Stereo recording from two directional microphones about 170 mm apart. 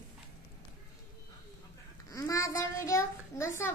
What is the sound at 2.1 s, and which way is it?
A child's voice, 20° left (ahead or behind).